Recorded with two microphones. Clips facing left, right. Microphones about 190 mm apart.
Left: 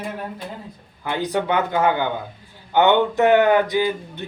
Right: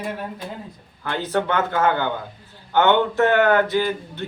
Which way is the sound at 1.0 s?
15° left (ahead or behind).